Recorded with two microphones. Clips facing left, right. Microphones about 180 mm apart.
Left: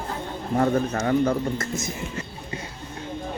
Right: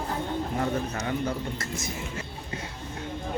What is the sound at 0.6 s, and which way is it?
Speech, 55° left (ahead or behind).